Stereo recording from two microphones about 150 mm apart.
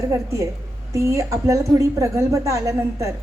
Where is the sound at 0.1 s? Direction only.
20° right (ahead or behind).